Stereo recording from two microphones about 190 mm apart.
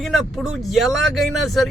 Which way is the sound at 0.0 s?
Centre (ahead or behind).